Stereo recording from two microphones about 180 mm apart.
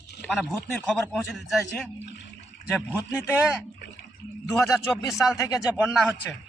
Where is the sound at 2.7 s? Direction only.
10° left (ahead or behind).